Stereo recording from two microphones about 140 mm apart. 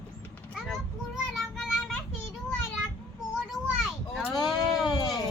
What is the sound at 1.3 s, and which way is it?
Child singing, centre (ahead or behind).